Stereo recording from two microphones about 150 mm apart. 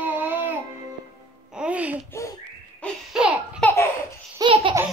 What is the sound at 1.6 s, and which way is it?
Music, 10° right (ahead or behind).